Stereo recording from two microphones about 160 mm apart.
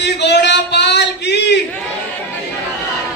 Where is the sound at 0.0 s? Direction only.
90° left.